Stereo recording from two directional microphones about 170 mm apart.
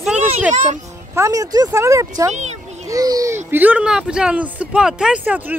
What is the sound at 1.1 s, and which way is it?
Speech, 20° right (ahead or behind).